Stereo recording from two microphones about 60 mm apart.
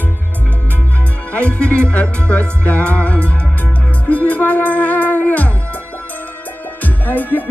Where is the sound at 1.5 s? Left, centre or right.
Centre.